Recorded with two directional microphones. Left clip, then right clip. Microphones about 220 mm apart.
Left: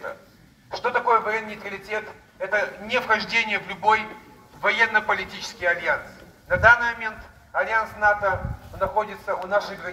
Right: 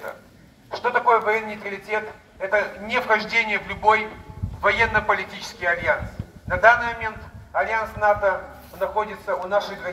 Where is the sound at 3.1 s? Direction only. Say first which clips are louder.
Right 2 dB; 50° left (ahead or behind).